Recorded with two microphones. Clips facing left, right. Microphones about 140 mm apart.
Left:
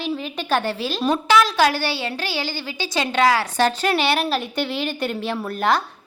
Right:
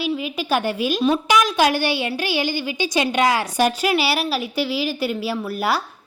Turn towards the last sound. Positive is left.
turn(degrees=-5)  # may be behind; listen again after turning